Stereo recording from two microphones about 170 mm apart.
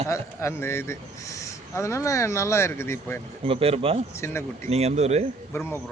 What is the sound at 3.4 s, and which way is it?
Speech, 35° right (ahead or behind).